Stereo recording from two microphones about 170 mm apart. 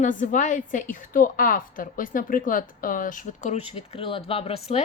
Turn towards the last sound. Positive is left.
turn(degrees=35)  # may be behind; listen again after turning